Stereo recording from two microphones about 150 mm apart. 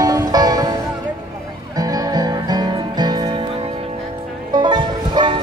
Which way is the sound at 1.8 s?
25° right (ahead or behind).